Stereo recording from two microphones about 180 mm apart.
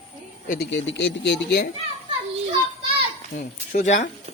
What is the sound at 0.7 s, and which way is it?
Speech, 90° left.